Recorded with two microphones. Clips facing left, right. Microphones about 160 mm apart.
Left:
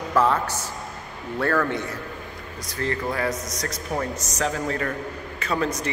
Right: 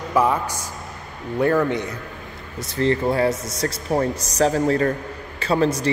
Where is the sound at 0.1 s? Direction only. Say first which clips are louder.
Right 1 dB; 10° right (ahead or behind).